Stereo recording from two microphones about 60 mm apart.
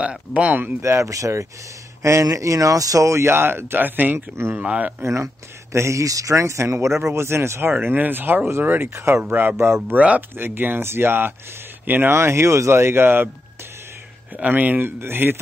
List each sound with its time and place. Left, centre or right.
0.0 s speech: right
0.7 s speech: right
5.0 s speech: right
7.7 s speech: right
9.2 s speech: right
10.3 s speech: right
14.3 s speech: right